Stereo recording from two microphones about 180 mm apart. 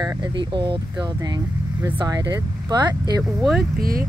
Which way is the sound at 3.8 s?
55° right (ahead or behind).